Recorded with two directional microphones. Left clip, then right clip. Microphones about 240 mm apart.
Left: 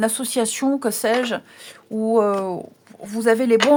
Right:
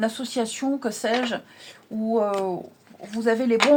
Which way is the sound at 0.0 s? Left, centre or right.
Left.